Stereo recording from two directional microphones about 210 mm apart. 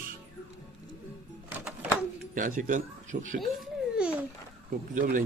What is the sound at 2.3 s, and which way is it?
Speech, 40° right (ahead or behind).